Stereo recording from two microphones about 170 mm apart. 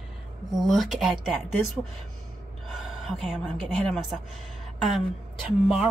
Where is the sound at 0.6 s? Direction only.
Centre (ahead or behind).